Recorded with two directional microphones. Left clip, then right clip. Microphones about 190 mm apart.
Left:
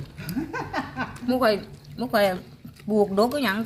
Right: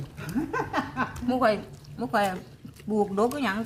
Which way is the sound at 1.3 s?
35° left (ahead or behind).